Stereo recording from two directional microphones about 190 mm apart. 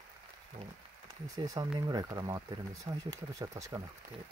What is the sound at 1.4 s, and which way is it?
Speech, 20° right (ahead or behind).